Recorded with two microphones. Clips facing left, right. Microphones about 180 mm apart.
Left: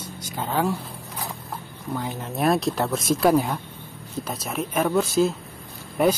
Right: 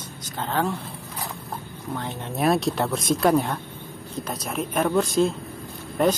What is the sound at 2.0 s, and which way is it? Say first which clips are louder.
Speech: left 1 dB; 5° left (ahead or behind).